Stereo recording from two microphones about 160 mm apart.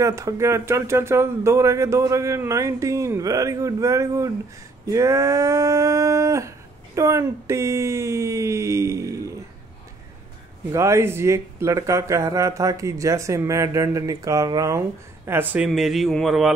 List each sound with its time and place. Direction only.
0.0 s speech: 20° right (ahead or behind)
10.7 s speech: 15° right (ahead or behind); by 16.5 s centre (ahead or behind)